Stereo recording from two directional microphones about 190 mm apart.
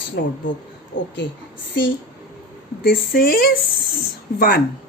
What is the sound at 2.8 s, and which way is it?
Speech, 50° left (ahead or behind).